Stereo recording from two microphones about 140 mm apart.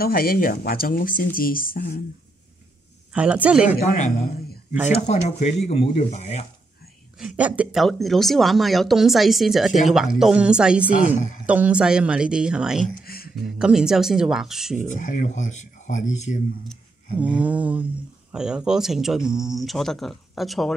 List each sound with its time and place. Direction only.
0.0 s speech: 90° left
3.1 s a woman's voice: 10° right (ahead or behind)
5.0 s speech: 50° left (ahead or behind)
7.2 s speech: 5° right (ahead or behind)
12.8 s a sound: 90° left
13.6 s speech: 5° right (ahead or behind)
14.8 s speech: 65° left (ahead or behind)
17.2 s speech: 10° right (ahead or behind)